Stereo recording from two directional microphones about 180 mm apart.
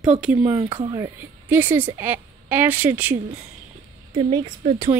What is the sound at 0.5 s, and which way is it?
Speech, 25° right (ahead or behind).